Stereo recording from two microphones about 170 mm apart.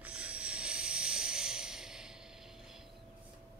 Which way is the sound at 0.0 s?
5° right (ahead or behind).